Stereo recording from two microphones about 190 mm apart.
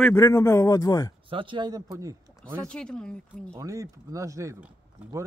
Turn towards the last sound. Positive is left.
turn(degrees=-15)  # may be behind; listen again after turning